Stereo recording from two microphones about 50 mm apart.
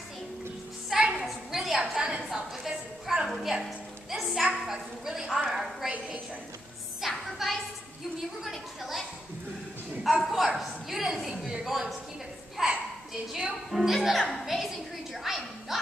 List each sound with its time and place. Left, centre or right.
0.8 s music: centre
1.1 s a sound: centre
1.8 s a woman's voice: centre
2.2 s a sound: centre
4.1 s music: centre
4.6 s a woman's voice: centre
7.0 s a sound: centre
8.5 s a woman's voice: centre
10.2 s a woman's voice: centre
15.2 s music: centre